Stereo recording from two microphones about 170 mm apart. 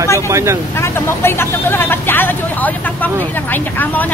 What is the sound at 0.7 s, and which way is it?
Speech, 15° left (ahead or behind).